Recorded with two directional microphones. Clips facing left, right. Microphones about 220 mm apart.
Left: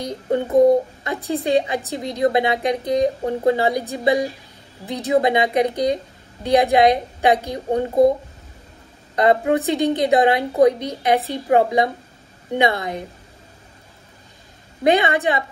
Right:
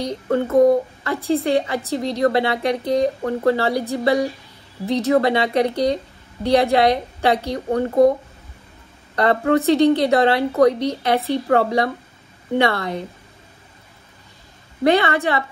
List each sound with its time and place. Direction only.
0.3 s a woman's voice: 15° left (ahead or behind)
9.1 s a woman's voice: 15° left (ahead or behind)
14.8 s a woman's voice: 15° left (ahead or behind)